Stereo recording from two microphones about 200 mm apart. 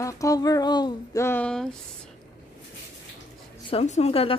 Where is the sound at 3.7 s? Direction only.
30° left (ahead or behind).